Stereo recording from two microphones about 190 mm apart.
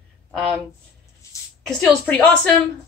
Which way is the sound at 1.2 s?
15° left (ahead or behind).